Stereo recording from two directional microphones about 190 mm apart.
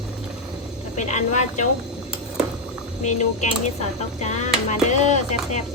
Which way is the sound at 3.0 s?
40° left (ahead or behind).